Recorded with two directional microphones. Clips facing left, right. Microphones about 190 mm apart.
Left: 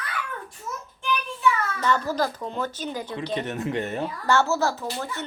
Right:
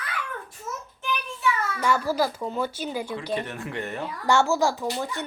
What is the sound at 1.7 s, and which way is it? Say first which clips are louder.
A child's voice: right 1 dB; 10° right (ahead or behind).